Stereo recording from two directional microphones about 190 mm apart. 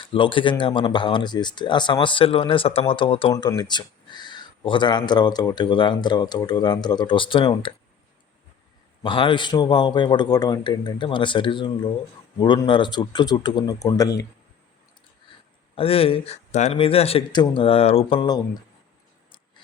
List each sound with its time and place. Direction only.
0.1 s speech: 25° left (ahead or behind)
9.0 s speech: 25° left (ahead or behind)
15.7 s speech: 30° left (ahead or behind)